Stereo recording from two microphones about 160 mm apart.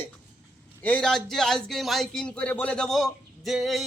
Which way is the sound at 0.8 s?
10° left (ahead or behind).